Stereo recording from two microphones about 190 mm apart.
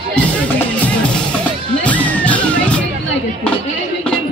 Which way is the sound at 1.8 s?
10° left (ahead or behind).